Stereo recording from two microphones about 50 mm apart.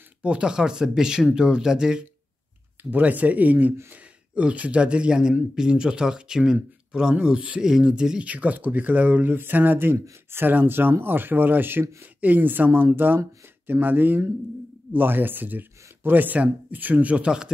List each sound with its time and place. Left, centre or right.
0.2 s speech: right
2.8 s speech: right; by 8.3 s centre
8.3 s speech: right